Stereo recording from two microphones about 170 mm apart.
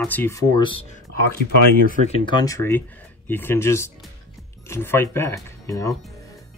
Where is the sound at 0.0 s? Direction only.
10° left (ahead or behind); by 0.8 s 30° left (ahead or behind).